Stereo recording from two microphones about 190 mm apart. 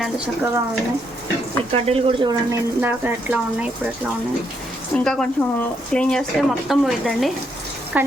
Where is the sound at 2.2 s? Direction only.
15° right (ahead or behind).